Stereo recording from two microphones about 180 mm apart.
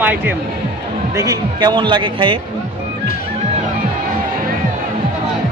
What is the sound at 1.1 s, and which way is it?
A man's voice, 20° right (ahead or behind).